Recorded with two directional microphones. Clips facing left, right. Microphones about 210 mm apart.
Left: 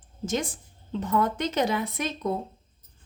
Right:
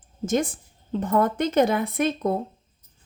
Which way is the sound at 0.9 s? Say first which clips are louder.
Right 3 dB; 50° right (ahead or behind).